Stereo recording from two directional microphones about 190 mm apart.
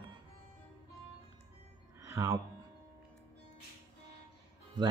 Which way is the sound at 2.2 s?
20° right (ahead or behind).